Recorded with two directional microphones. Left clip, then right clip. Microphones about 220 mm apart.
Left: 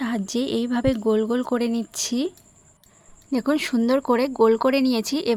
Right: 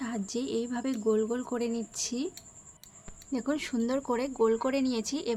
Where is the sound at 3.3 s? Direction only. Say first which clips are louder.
Left 9 dB; 40° left (ahead or behind).